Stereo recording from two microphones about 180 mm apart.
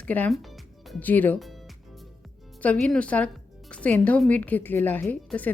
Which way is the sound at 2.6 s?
5° left (ahead or behind).